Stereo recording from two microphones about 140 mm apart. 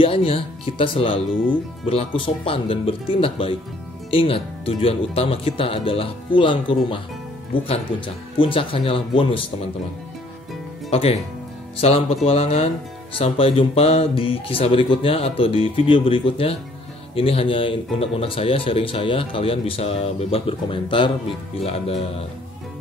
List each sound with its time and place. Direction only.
0.0 s speech: 40° left (ahead or behind)
10.9 s speech: 45° left (ahead or behind)